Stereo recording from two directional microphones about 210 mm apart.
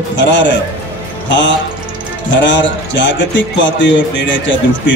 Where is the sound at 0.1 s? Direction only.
60° left (ahead or behind).